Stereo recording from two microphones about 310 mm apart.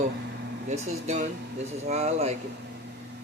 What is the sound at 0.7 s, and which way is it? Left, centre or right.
Speech, right.